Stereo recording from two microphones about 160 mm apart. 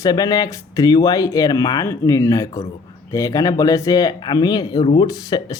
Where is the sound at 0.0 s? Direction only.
25° left (ahead or behind).